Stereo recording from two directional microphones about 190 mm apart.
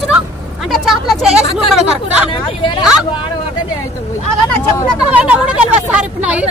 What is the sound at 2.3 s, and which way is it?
Speech, 25° left (ahead or behind).